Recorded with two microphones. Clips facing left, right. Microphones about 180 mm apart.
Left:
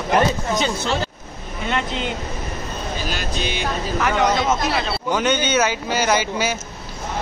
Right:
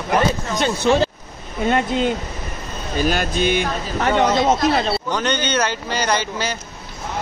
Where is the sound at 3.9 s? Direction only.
35° right (ahead or behind).